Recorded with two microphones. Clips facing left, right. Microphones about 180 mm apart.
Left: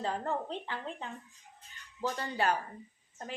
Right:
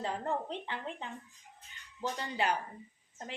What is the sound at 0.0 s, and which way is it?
A woman's voice, 20° right (ahead or behind).